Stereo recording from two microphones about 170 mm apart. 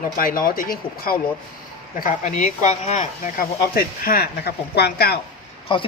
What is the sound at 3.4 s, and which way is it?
Speech, 60° left (ahead or behind).